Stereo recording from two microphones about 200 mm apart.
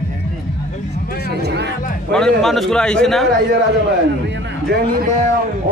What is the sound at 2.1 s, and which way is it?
Speech, centre (ahead or behind).